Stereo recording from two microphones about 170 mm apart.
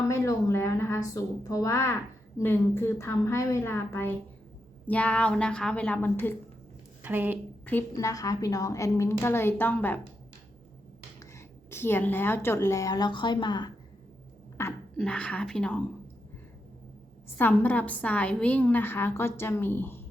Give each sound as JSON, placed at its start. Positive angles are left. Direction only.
{"t": 0.0, "sound": "a woman's voice", "side_deg": 15}
{"t": 7.0, "sound": "a woman's voice", "side_deg": -10}
{"t": 7.6, "sound": "a woman's voice", "side_deg": 10}
{"t": 11.2, "sound": "speech", "side_deg": 15}
{"t": 14.6, "sound": "a woman's voice", "side_deg": 15}
{"t": 14.9, "sound": "a woman's voice", "side_deg": 5}
{"t": 17.3, "sound": "a woman's voice", "side_deg": 10}